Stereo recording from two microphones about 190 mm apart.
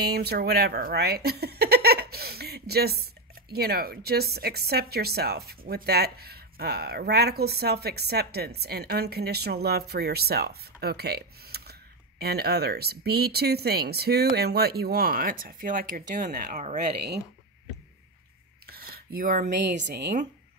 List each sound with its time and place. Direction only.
0.0 s speech: 55° right (ahead or behind); by 16.8 s 40° right (ahead or behind)
18.7 s speech: 55° right (ahead or behind)